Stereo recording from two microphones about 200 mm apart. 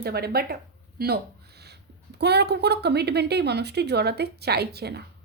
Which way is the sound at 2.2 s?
55° right (ahead or behind).